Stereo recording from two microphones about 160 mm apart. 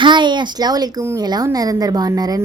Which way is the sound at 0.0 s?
30° right (ahead or behind).